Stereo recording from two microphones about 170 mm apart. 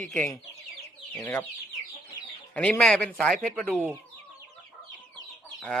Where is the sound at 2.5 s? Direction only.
10° left (ahead or behind).